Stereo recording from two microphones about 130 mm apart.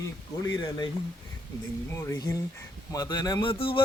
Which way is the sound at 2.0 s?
20° left (ahead or behind).